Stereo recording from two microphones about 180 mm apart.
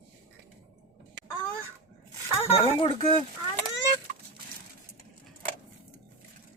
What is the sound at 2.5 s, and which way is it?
Speech, 30° left (ahead or behind).